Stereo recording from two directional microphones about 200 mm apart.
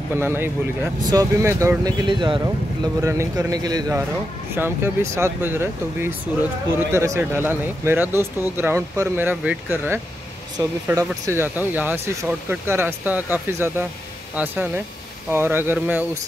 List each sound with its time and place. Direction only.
0.1 s speech: 10° right (ahead or behind)